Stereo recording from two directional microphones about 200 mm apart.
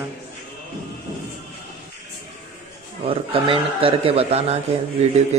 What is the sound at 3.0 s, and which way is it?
A man's voice, 30° right (ahead or behind).